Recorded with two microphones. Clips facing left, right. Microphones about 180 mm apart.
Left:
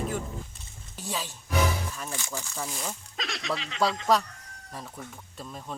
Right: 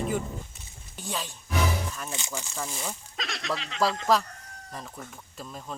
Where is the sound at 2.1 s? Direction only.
20° right (ahead or behind).